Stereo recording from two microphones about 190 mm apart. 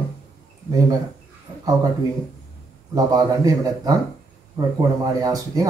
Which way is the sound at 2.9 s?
20° right (ahead or behind).